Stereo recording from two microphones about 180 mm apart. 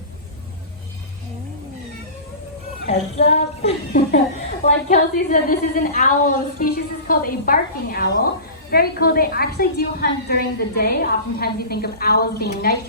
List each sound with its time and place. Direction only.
2.8 s speech: 40° left (ahead or behind)
4.6 s a woman's voice: 45° left (ahead or behind)